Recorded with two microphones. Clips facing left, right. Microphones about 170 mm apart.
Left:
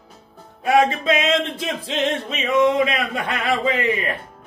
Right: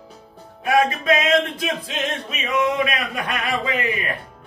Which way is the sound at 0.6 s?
25° left (ahead or behind).